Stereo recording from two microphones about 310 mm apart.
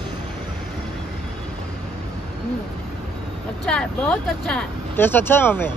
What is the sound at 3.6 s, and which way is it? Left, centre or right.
Speech, centre.